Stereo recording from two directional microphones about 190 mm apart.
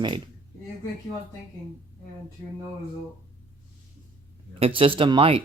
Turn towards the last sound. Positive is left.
turn(degrees=-30)  # may be behind; listen again after turning